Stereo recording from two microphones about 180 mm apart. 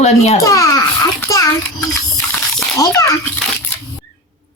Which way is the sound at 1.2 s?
20° left (ahead or behind).